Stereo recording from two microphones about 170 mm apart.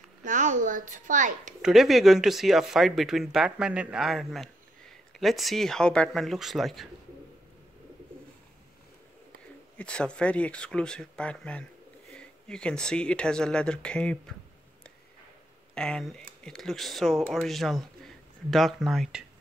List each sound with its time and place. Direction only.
0.2 s a child's voice: 45° right (ahead or behind)
1.6 s speech: centre (ahead or behind)
9.8 s speech: 5° left (ahead or behind)
15.7 s speech: 5° left (ahead or behind)